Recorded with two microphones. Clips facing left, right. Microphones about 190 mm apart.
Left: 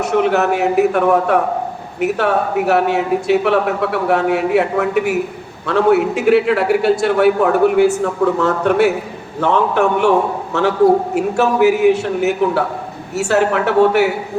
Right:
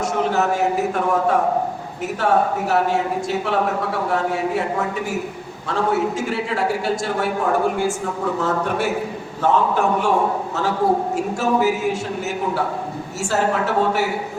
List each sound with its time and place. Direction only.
0.0 s a man's voice: 65° left (ahead or behind)